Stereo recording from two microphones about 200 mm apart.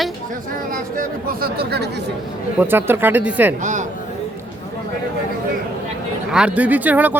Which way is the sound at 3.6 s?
35° right (ahead or behind).